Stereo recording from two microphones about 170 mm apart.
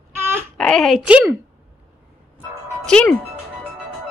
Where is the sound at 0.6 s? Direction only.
5° left (ahead or behind).